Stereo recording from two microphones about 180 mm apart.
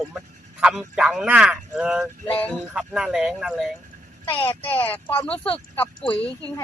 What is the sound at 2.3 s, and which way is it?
Speech, 10° left (ahead or behind).